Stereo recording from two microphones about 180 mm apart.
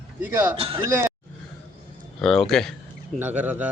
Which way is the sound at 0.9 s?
15° right (ahead or behind).